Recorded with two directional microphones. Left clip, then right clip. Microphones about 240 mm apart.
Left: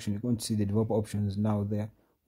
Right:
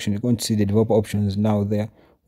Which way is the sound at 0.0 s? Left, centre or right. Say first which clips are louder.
Right 10 dB; right.